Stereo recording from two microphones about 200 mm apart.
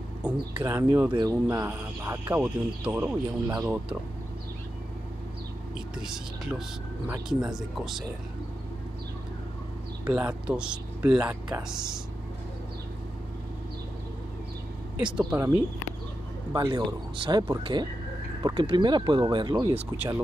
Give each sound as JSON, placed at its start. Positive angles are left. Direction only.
{"t": 0.2, "sound": "speech", "side_deg": -5}
{"t": 0.6, "sound": "speech", "side_deg": -15}
{"t": 5.9, "sound": "speech", "side_deg": 0}
{"t": 10.0, "sound": "speech", "side_deg": -5}
{"t": 15.0, "sound": "speech", "side_deg": -5}
{"t": 16.5, "sound": "speech", "side_deg": -20}
{"t": 19.7, "sound": "speech", "side_deg": -10}